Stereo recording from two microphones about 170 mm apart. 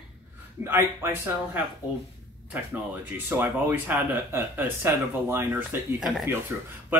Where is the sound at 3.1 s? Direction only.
10° right (ahead or behind).